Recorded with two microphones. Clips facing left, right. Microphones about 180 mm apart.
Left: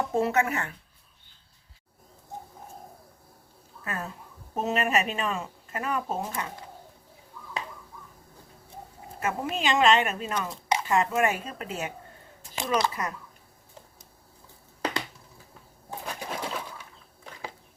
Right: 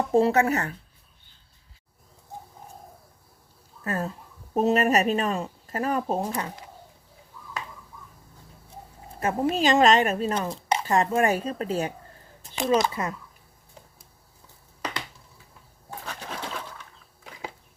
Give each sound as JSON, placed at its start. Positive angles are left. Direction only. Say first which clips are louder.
{"t": 0.1, "sound": "a woman's voice", "louder": "right 8 dB", "side_deg": -30}
{"t": 3.8, "sound": "a woman's voice", "louder": "right 6 dB", "side_deg": -40}
{"t": 9.2, "sound": "a woman's voice", "louder": "right 5 dB", "side_deg": -35}
{"t": 15.9, "sound": "pigeon", "louder": "left 2 dB", "side_deg": 10}